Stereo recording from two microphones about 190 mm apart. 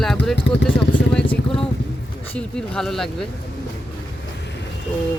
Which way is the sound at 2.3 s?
5° left (ahead or behind).